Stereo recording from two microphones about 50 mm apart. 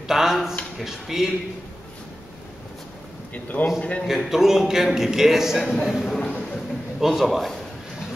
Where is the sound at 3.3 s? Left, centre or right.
Left.